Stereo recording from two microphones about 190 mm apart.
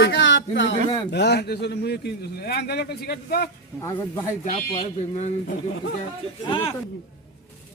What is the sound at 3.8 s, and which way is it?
Speech, 15° left (ahead or behind).